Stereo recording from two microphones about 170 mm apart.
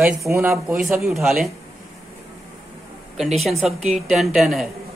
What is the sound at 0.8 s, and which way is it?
Speech, centre (ahead or behind).